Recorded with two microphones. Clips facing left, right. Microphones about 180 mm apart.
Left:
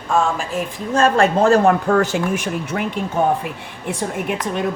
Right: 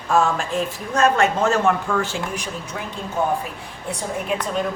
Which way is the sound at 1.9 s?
65° left (ahead or behind).